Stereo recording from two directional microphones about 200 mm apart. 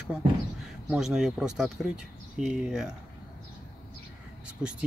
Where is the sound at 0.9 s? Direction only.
5° right (ahead or behind).